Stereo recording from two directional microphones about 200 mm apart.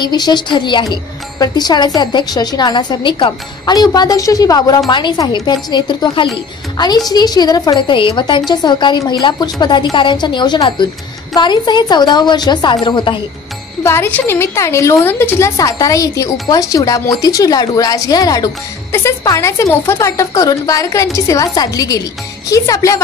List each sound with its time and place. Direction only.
0.0 s a woman's voice: 20° left (ahead or behind)
13.8 s speech: 10° left (ahead or behind)